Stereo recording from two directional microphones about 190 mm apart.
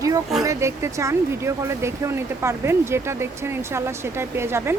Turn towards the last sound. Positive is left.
turn(degrees=-15)  # may be behind; listen again after turning